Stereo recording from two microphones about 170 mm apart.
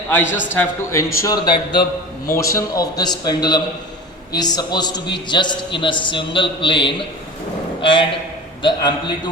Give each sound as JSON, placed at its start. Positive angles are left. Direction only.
{"t": 0.1, "sound": "a man's voice", "side_deg": 10}